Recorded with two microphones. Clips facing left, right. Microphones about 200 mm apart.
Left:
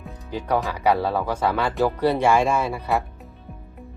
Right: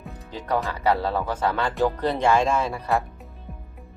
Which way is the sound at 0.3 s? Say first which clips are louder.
Left 2 dB; 10° left (ahead or behind).